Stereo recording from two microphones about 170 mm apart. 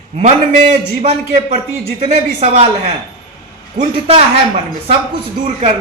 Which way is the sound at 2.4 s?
40° right (ahead or behind).